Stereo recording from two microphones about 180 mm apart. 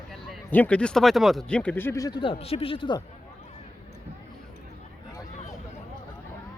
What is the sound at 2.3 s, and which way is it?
Speech, 35° left (ahead or behind).